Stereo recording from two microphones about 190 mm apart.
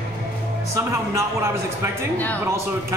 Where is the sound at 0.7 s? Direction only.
15° right (ahead or behind).